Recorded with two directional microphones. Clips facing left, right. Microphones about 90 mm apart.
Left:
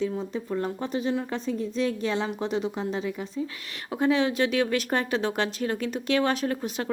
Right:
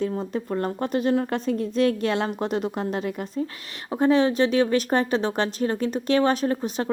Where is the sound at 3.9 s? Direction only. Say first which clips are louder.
Right 4 dB; 40° right (ahead or behind).